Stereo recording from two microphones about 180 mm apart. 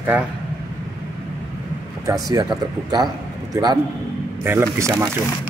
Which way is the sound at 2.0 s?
20° right (ahead or behind).